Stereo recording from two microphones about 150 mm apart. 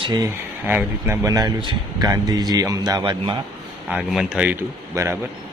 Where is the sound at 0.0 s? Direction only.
25° right (ahead or behind).